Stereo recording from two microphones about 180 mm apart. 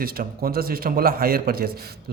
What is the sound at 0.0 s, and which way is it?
A man's voice, 55° right (ahead or behind).